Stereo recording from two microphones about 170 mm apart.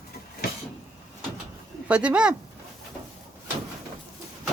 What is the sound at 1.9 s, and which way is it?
Speech, 5° right (ahead or behind).